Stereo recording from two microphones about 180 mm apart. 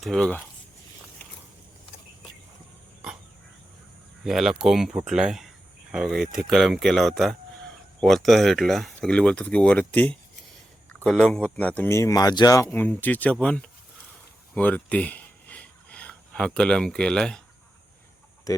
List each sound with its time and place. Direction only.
0.0 s speech: centre (ahead or behind)
4.2 s speech: centre (ahead or behind)
14.5 s a sound: 10° left (ahead or behind)
18.5 s speech: 20° left (ahead or behind)